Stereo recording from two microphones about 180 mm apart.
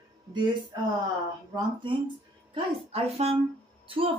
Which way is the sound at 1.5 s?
25° right (ahead or behind).